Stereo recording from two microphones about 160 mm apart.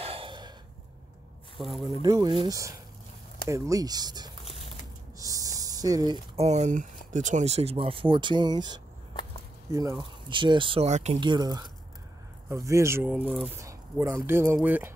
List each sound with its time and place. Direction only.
0.0 s a sound: 35° right (ahead or behind)
1.6 s speech: centre (ahead or behind)
2.0 s speech: 25° right (ahead or behind)
5.2 s a sound: 20° right (ahead or behind)
6.3 s speech: 45° right (ahead or behind)
11.1 s speech: 25° right (ahead or behind); by 14.9 s 10° right (ahead or behind)